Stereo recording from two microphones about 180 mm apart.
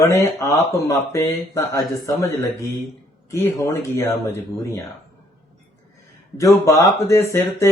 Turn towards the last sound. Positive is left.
turn(degrees=15)  # may be behind; listen again after turning